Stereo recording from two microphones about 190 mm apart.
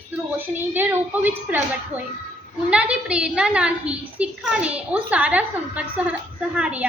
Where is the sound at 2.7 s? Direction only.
5° right (ahead or behind).